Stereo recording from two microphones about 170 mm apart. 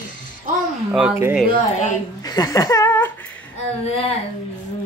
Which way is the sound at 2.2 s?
20° left (ahead or behind).